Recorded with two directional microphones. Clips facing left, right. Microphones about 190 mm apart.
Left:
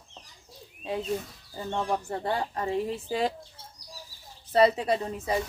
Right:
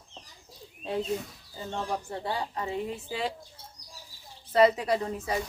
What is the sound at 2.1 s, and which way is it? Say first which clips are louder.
Speech: left 3 dB; 55° left (ahead or behind).